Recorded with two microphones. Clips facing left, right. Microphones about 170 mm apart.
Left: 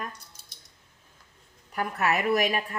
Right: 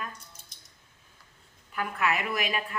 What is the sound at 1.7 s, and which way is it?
Speech, 40° left (ahead or behind).